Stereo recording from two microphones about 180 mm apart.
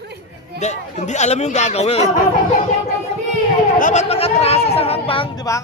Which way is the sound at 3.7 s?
45° left (ahead or behind).